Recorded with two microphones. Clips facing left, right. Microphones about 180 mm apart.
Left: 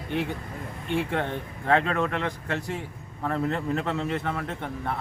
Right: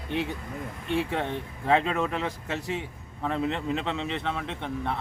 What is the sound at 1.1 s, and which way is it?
Speech, centre (ahead or behind).